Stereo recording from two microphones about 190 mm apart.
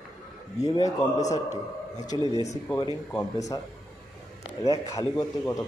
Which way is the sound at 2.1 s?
25° left (ahead or behind).